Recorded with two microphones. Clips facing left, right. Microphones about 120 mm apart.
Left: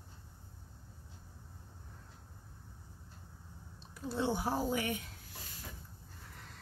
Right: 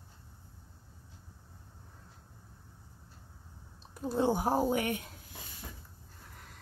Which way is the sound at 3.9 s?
45° right (ahead or behind).